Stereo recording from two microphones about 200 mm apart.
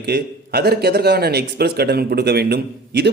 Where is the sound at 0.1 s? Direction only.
50° right (ahead or behind).